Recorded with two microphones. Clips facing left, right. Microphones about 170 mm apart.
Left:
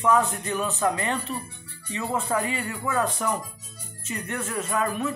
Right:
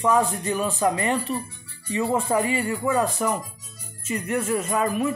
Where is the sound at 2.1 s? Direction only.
10° right (ahead or behind).